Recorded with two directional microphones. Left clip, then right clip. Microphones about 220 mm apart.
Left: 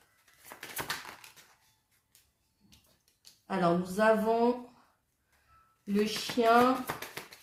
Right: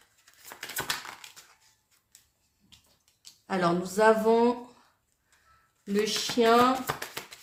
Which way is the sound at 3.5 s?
40° right (ahead or behind).